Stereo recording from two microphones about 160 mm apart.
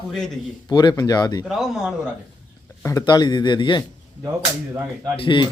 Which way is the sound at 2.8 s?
20° left (ahead or behind).